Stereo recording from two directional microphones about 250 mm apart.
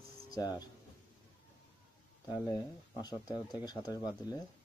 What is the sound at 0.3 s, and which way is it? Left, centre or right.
Speech, centre.